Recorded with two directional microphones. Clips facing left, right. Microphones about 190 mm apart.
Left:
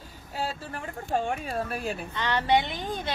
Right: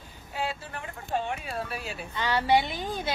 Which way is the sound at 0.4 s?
40° left (ahead or behind).